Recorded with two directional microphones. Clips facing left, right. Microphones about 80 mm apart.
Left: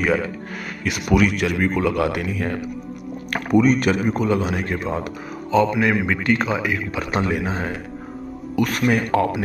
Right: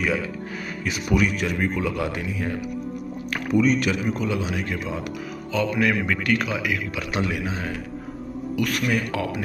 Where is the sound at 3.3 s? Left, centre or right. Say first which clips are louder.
Left 4 dB; left.